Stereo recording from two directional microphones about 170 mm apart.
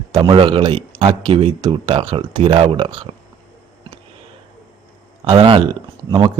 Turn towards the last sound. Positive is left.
turn(degrees=-30)  # may be behind; listen again after turning